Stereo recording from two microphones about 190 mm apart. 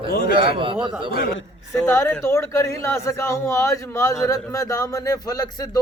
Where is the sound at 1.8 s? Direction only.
15° left (ahead or behind).